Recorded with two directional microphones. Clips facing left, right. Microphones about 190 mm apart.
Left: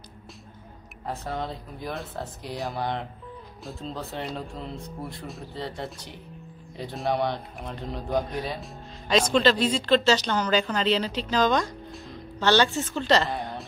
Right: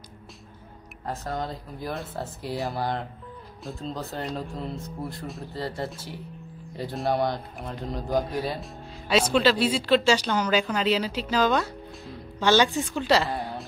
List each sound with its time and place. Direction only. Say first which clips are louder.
1.0 s speech: even; centre (ahead or behind)